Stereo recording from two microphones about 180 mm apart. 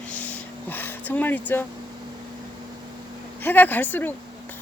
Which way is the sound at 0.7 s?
10° left (ahead or behind).